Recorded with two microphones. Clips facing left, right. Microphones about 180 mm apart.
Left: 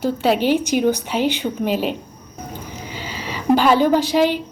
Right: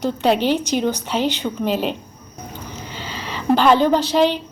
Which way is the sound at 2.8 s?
10° left (ahead or behind).